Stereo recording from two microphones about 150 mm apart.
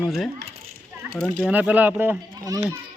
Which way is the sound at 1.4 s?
10° right (ahead or behind).